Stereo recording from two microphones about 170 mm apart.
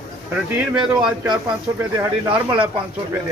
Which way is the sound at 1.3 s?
25° right (ahead or behind).